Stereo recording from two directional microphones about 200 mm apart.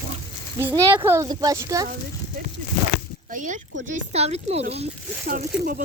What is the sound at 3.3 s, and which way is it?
Speech, 40° right (ahead or behind).